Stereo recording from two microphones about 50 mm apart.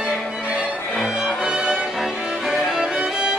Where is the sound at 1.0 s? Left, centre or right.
Centre.